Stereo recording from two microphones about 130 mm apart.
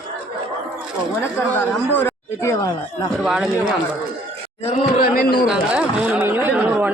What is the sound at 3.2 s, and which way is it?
Speech, 5° right (ahead or behind).